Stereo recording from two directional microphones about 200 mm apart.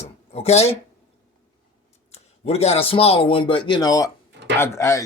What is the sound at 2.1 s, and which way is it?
Speech, 30° left (ahead or behind).